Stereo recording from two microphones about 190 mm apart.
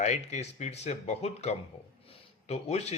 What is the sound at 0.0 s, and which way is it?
Speech, 35° left (ahead or behind).